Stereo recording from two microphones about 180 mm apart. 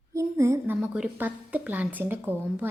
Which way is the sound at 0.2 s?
15° right (ahead or behind).